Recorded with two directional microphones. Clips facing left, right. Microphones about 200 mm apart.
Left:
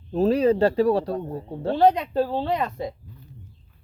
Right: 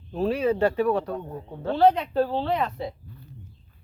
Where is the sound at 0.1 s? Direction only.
40° left (ahead or behind).